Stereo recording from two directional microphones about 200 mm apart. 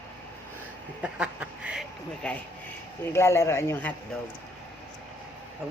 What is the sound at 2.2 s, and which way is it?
Speech, 5° left (ahead or behind).